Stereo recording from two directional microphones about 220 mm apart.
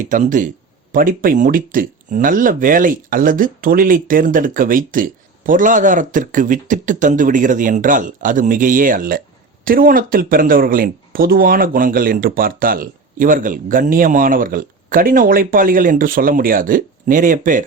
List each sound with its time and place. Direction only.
0.0 s speech: 35° right (ahead or behind)